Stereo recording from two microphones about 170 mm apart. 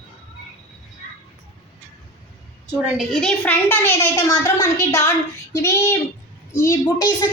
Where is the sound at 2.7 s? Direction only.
Centre (ahead or behind); by 7.3 s 20° left (ahead or behind).